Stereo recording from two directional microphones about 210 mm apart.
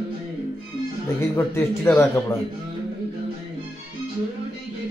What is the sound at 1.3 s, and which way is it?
Speech, 10° left (ahead or behind).